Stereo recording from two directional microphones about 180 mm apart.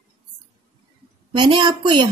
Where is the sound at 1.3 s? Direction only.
30° right (ahead or behind).